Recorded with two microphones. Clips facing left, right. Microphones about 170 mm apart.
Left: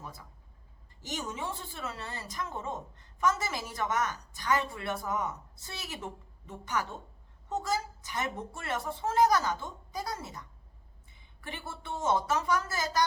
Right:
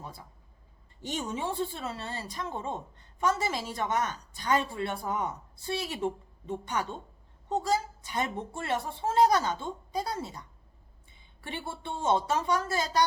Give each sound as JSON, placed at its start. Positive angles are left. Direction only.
{"t": 0.0, "sound": "vehicle", "side_deg": -30}
{"t": 1.0, "sound": "speech", "side_deg": -30}